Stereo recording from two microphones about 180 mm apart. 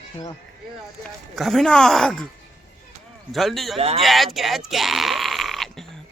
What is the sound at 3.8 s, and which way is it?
Speech, 35° right (ahead or behind).